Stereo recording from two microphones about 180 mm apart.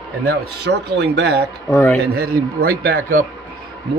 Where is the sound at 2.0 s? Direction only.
60° right (ahead or behind).